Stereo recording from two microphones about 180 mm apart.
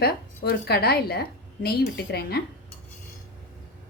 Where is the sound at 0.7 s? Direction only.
60° left (ahead or behind).